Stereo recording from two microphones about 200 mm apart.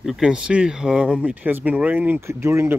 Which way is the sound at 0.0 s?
5° right (ahead or behind).